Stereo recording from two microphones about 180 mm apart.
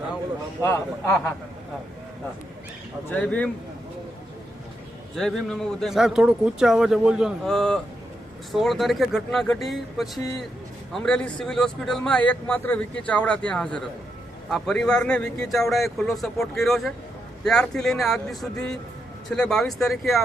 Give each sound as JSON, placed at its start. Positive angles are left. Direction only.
{"t": 0.6, "sound": "a man's voice", "side_deg": 15}
{"t": 3.1, "sound": "a man's voice", "side_deg": 10}
{"t": 5.1, "sound": "a man's voice", "side_deg": 0}